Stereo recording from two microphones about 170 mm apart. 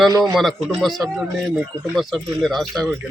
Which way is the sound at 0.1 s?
20° right (ahead or behind).